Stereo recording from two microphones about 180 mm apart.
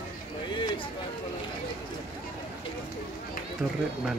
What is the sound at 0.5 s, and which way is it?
Speech, 25° left (ahead or behind).